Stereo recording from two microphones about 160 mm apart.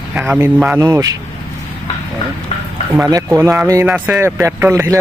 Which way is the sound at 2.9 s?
20° right (ahead or behind).